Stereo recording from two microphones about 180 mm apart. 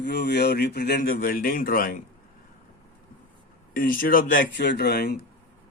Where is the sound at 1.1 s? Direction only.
55° left (ahead or behind).